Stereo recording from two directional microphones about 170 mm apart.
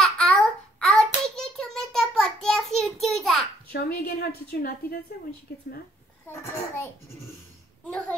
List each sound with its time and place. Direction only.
0.0 s child singing: centre (ahead or behind)
3.7 s a woman's voice: 70° left (ahead or behind)
6.2 s a child's voice: 15° left (ahead or behind)